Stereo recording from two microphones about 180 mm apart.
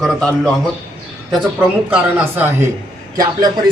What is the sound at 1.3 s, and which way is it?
Speech, 5° right (ahead or behind).